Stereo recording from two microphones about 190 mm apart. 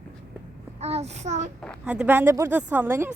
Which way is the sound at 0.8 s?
35° right (ahead or behind).